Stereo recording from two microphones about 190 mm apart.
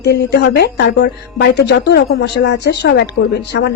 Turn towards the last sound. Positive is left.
turn(degrees=60)  # may be behind; listen again after turning